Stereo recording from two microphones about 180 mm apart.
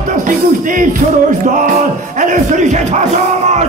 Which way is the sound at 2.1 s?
45° right (ahead or behind).